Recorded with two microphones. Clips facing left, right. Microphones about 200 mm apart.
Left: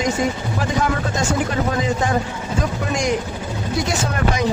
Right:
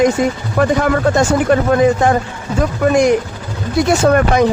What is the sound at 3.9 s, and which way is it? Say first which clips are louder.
Speech: right 13 dB; 60° right (ahead or behind).